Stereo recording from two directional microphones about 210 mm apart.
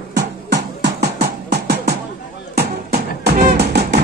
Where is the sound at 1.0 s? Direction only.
50° right (ahead or behind).